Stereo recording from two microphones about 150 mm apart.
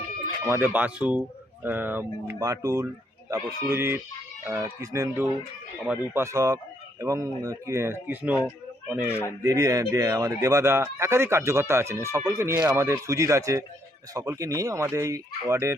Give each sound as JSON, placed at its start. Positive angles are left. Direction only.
{"t": 0.4, "sound": "speech", "side_deg": -15}
{"t": 9.4, "sound": "speech", "side_deg": -20}